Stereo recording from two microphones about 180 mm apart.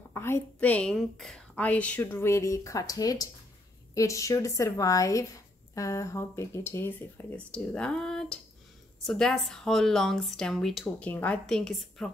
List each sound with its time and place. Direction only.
0.1 s a woman's voice: 15° left (ahead or behind)